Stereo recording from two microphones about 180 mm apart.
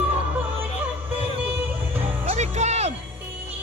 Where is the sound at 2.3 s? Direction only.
40° right (ahead or behind).